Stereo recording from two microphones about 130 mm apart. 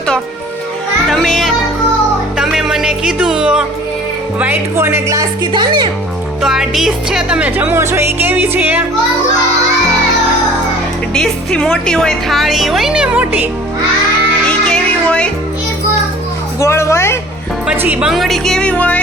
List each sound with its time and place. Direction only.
1.0 s music: centre (ahead or behind); by 5.9 s 35° right (ahead or behind)
6.4 s music: 5° right (ahead or behind)
11.1 s speech: 5° left (ahead or behind); by 13.5 s 10° right (ahead or behind)
14.7 s music: 10° left (ahead or behind)
16.6 s a sound: 20° left (ahead or behind)
17.7 s speech: 10° right (ahead or behind); by 18.9 s 10° left (ahead or behind)